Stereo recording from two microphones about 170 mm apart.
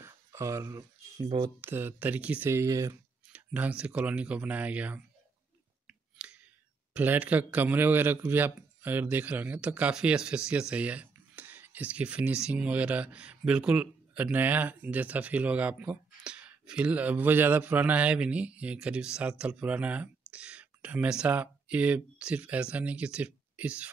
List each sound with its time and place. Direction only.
0.0 s a man's voice: 15° right (ahead or behind)
5.9 s a sound: 5° right (ahead or behind)
6.9 s a man's voice: 10° right (ahead or behind)